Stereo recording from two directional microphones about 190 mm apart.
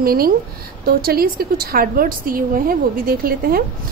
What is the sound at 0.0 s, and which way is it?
A woman's voice, 50° right (ahead or behind).